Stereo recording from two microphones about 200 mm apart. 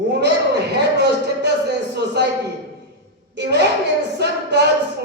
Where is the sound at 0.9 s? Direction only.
55° right (ahead or behind).